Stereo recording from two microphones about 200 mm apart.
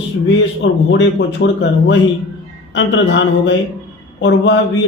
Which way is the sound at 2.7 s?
65° left (ahead or behind).